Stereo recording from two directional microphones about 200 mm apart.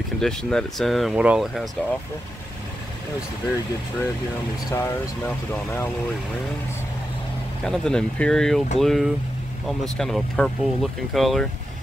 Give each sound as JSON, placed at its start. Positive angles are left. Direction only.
{"t": 0.2, "sound": "speech", "side_deg": 5}
{"t": 4.6, "sound": "speech", "side_deg": 15}
{"t": 7.6, "sound": "speech", "side_deg": 5}